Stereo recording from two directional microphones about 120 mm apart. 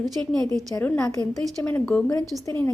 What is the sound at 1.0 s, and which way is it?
Speech, 30° left (ahead or behind).